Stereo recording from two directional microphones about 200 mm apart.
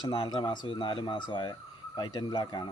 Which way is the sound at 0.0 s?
25° left (ahead or behind).